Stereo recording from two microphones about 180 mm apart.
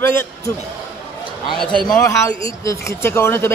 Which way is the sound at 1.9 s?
15° left (ahead or behind).